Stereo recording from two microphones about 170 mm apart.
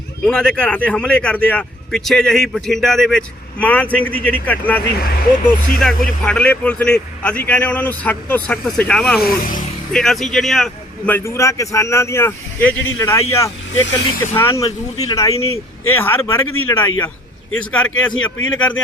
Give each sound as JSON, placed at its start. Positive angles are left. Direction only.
{"t": 0.3, "sound": "speech", "side_deg": 5}
{"t": 4.9, "sound": "speech", "side_deg": 60}
{"t": 6.2, "sound": "speech", "side_deg": 5}
{"t": 9.2, "sound": "speech", "side_deg": 55}
{"t": 9.9, "sound": "speech", "side_deg": 0}